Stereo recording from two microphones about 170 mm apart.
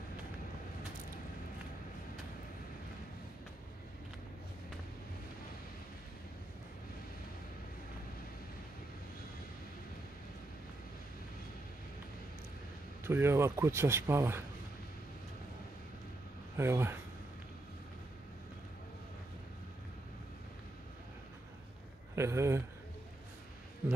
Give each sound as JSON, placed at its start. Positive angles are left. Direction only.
{"t": 13.0, "sound": "a man's voice", "side_deg": -15}
{"t": 16.5, "sound": "a man's voice", "side_deg": -15}
{"t": 22.1, "sound": "speech", "side_deg": -15}